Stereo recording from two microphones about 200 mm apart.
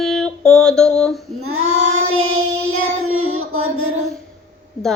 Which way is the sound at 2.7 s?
90° right.